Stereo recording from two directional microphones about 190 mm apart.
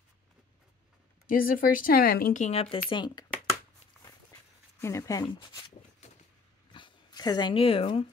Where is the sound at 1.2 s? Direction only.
50° left (ahead or behind); by 3.3 s 25° left (ahead or behind).